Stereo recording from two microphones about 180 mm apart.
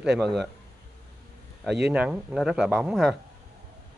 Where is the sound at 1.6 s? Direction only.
5° right (ahead or behind).